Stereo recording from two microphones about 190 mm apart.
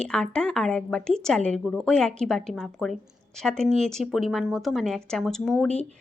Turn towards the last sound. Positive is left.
turn(degrees=5)  # may be behind; listen again after turning